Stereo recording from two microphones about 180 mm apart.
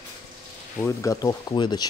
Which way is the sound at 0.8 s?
15° left (ahead or behind).